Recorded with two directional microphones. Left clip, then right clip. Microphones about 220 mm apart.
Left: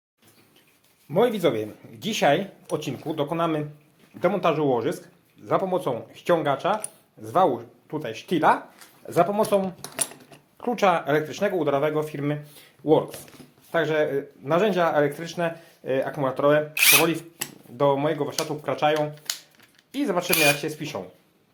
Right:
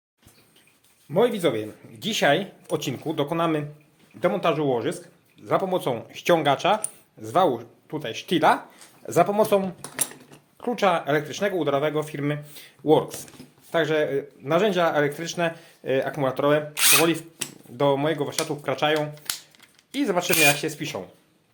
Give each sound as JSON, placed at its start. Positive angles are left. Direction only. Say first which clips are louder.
{"t": 1.1, "sound": "a man's voice", "louder": "even", "side_deg": 0}
{"t": 2.6, "sound": "speech", "louder": "right 1 dB", "side_deg": -25}
{"t": 4.2, "sound": "a man's voice", "louder": "left 1 dB", "side_deg": -5}
{"t": 5.6, "sound": "speech", "louder": "even", "side_deg": -25}
{"t": 7.2, "sound": "speech", "louder": "even", "side_deg": -20}
{"t": 9.0, "sound": "speech", "louder": "right 1 dB", "side_deg": -30}
{"t": 10.6, "sound": "speech", "louder": "left 1 dB", "side_deg": 0}
{"t": 12.8, "sound": "speech", "louder": "right 1 dB", "side_deg": -30}
{"t": 13.7, "sound": "speech", "louder": "even", "side_deg": -15}